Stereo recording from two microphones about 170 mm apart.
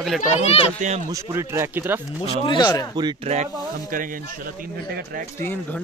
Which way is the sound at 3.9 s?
55° right (ahead or behind).